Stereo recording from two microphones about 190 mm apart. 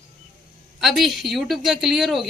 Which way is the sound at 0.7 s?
Centre (ahead or behind).